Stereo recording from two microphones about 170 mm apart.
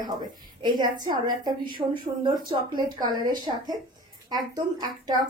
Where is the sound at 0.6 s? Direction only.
25° right (ahead or behind).